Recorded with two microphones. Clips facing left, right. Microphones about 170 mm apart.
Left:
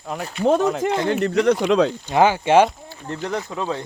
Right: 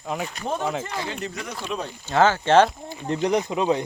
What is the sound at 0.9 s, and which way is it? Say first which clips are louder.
Speech: left 11 dB; 65° left (ahead or behind).